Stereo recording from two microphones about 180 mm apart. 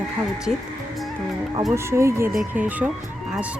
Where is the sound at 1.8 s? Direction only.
15° right (ahead or behind).